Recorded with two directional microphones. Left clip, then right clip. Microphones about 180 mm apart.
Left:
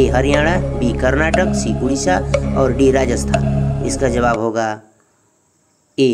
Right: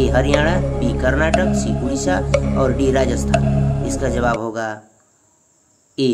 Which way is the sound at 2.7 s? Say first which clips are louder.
Left 3 dB; 20° left (ahead or behind).